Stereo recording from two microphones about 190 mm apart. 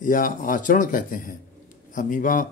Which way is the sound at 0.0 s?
45° left (ahead or behind).